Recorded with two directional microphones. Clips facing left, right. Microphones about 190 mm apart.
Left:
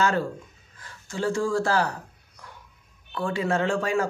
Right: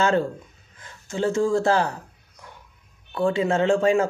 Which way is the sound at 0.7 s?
20° right (ahead or behind).